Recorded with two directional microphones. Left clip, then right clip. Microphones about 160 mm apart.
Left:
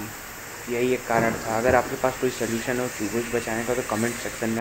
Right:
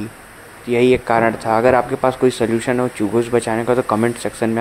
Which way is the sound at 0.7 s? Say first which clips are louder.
Right 9 dB; 60° right (ahead or behind).